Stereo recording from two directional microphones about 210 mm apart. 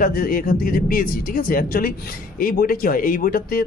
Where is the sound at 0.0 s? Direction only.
45° left (ahead or behind).